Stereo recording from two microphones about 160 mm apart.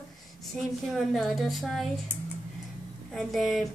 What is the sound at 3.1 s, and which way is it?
Speech, centre (ahead or behind).